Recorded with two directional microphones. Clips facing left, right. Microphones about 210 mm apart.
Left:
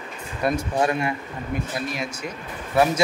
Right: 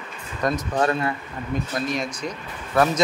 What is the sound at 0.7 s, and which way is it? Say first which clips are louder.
A man's voice: even; 15° left (ahead or behind).